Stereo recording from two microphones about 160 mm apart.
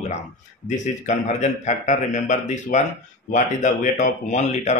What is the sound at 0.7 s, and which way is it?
Speech, 50° left (ahead or behind).